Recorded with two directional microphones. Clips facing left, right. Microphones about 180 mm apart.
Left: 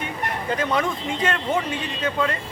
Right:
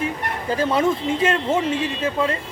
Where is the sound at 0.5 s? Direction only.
30° right (ahead or behind).